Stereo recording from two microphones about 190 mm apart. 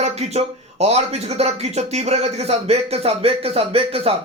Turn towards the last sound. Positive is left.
turn(degrees=-30)  # may be behind; listen again after turning